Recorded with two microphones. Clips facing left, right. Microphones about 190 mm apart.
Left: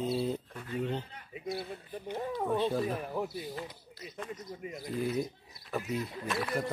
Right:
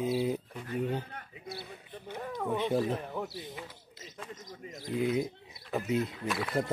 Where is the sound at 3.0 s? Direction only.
5° left (ahead or behind).